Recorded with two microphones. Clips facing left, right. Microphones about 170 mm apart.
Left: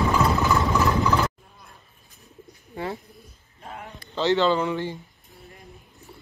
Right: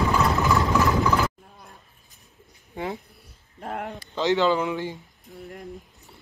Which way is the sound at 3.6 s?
60° right (ahead or behind).